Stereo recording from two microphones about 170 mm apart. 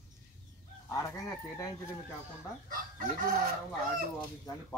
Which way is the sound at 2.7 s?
60° right (ahead or behind).